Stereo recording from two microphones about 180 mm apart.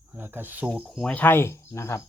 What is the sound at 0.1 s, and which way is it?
Speech, 10° right (ahead or behind).